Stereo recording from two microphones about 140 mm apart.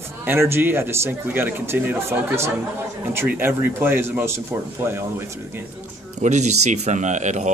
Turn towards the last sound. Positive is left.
turn(degrees=-60)  # may be behind; listen again after turning